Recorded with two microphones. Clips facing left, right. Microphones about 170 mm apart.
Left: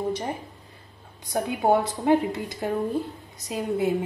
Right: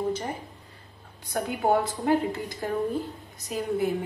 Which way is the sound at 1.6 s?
20° left (ahead or behind).